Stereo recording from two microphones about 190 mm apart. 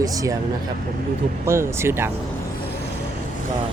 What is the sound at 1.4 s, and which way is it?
Speech, 15° right (ahead or behind).